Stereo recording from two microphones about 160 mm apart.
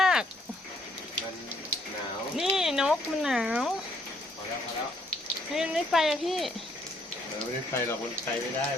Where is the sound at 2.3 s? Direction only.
5° right (ahead or behind).